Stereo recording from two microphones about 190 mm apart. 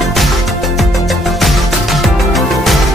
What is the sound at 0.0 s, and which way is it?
Music, centre (ahead or behind).